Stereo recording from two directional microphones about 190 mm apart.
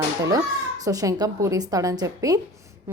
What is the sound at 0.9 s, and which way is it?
A woman's voice, 20° right (ahead or behind).